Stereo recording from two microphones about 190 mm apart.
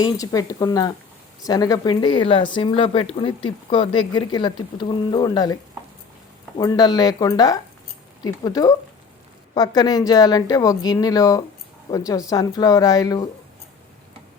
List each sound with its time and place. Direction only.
0.0 s speech: 20° left (ahead or behind)
6.6 s speech: 20° left (ahead or behind)